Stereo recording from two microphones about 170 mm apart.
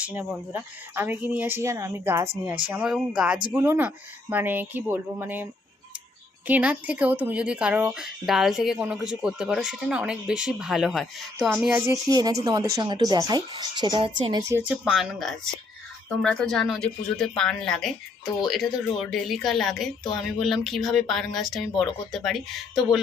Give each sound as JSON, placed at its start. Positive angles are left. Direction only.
{"t": 0.0, "sound": "speech", "side_deg": -10}
{"t": 2.7, "sound": "speech", "side_deg": -5}
{"t": 6.5, "sound": "speech", "side_deg": -10}
{"t": 11.9, "sound": "speech", "side_deg": -20}
{"t": 14.5, "sound": "speech", "side_deg": -10}
{"t": 14.8, "sound": "speech", "side_deg": 0}